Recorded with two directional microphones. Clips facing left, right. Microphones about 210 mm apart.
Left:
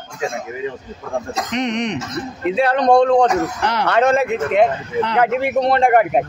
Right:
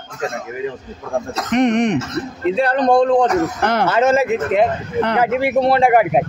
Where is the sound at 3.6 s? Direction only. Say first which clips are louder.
Right 3 dB; 50° right (ahead or behind).